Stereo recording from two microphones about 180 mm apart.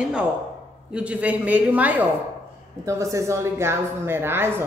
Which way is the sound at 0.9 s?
5° right (ahead or behind).